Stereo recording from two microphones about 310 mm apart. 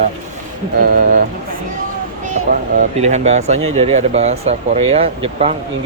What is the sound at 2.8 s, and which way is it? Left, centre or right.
Speech, right.